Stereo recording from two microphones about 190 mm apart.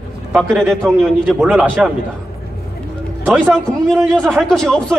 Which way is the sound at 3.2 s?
10° right (ahead or behind).